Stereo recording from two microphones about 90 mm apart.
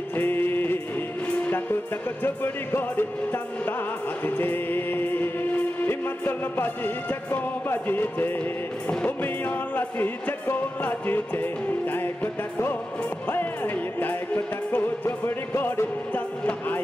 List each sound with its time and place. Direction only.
0.1 s music: 20° left (ahead or behind)